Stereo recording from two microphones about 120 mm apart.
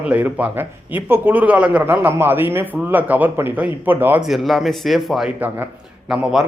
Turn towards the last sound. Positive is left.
turn(degrees=-5)  # may be behind; listen again after turning